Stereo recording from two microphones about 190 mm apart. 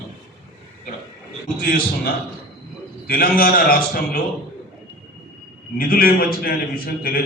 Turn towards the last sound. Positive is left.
turn(degrees=50)  # may be behind; listen again after turning